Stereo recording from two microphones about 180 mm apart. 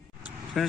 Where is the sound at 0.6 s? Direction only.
Centre (ahead or behind).